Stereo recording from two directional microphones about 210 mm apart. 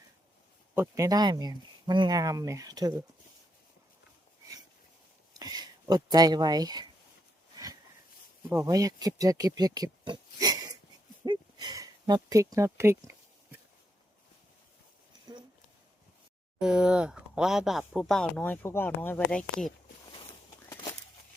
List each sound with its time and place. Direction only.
0.7 s speech: 10° right (ahead or behind)
5.4 s speech: 20° right (ahead or behind)
7.5 s a sound: 15° right (ahead or behind)
8.4 s speech: 15° right (ahead or behind)
11.3 s a sound: 20° right (ahead or behind)
16.6 s speech: 5° right (ahead or behind)